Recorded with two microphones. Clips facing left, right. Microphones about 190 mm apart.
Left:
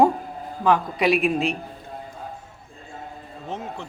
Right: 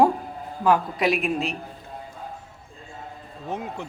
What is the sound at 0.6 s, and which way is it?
Speech, 5° right (ahead or behind).